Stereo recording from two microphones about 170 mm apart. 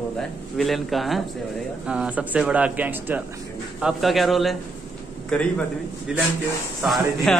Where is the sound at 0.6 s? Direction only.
Centre (ahead or behind).